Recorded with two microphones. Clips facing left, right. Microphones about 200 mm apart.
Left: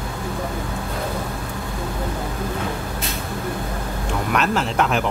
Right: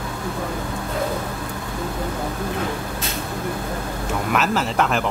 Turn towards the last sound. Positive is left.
turn(degrees=0)  # may be behind; listen again after turning